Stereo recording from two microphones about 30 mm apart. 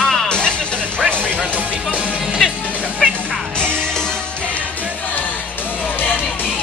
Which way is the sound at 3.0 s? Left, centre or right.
Left.